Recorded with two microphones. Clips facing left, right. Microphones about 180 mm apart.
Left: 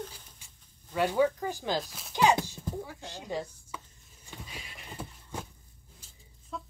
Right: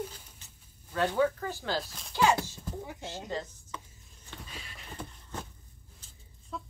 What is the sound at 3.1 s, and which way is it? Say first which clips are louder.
Speech: even; 15° left (ahead or behind).